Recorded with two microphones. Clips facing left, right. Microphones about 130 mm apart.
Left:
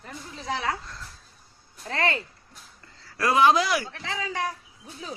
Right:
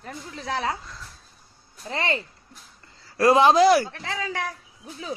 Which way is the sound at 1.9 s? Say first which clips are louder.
Even; 25° right (ahead or behind).